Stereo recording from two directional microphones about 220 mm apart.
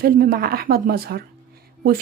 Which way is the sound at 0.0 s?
40° right (ahead or behind).